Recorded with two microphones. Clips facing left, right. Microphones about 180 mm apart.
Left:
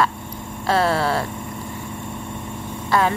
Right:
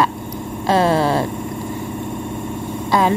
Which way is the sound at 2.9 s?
15° right (ahead or behind).